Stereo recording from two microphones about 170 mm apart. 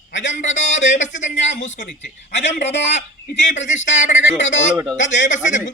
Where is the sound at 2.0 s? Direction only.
90° left.